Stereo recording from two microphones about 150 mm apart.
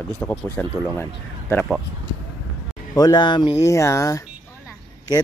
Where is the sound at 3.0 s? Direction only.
30° left (ahead or behind).